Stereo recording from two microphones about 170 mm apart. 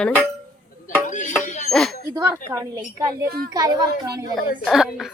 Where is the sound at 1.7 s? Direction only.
5° left (ahead or behind).